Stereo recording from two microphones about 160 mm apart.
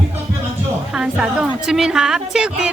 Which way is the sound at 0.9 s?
5° right (ahead or behind).